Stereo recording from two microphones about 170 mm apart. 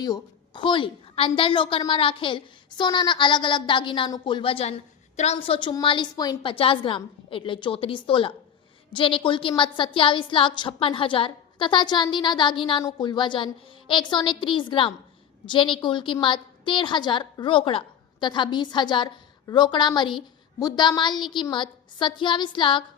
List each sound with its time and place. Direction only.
0.0 s a woman's voice: 25° left (ahead or behind)